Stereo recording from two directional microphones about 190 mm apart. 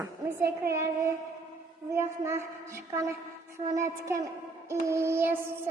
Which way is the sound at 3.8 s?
15° right (ahead or behind).